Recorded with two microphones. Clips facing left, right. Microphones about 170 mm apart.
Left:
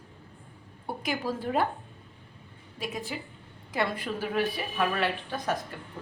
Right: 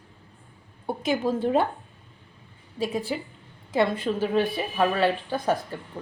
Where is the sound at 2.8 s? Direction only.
30° right (ahead or behind).